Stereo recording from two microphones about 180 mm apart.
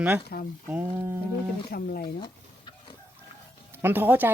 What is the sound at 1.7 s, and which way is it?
Speech, 55° left (ahead or behind).